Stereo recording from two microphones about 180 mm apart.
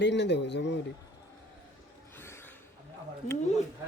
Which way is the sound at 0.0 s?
75° left (ahead or behind).